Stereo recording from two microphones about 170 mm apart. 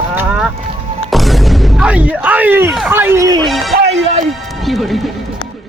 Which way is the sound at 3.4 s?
Centre (ahead or behind).